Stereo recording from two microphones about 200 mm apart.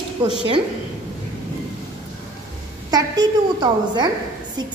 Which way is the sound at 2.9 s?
20° right (ahead or behind).